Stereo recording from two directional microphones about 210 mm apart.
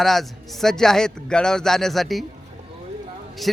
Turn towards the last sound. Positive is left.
turn(degrees=0)  # may be behind; listen again after turning